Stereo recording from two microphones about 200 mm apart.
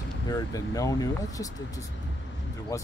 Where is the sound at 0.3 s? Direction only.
15° left (ahead or behind).